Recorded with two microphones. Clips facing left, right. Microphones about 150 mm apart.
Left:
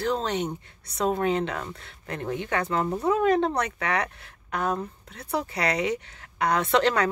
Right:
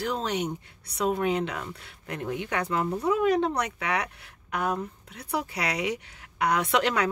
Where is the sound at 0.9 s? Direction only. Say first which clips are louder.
Left 1 dB; 35° left (ahead or behind).